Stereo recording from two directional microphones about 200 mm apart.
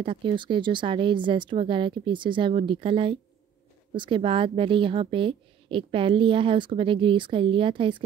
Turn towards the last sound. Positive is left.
turn(degrees=-25)  # may be behind; listen again after turning